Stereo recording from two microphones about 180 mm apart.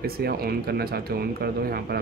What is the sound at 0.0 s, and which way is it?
Speech, 55° right (ahead or behind).